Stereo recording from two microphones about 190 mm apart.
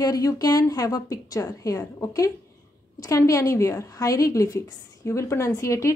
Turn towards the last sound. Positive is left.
turn(degrees=15)  # may be behind; listen again after turning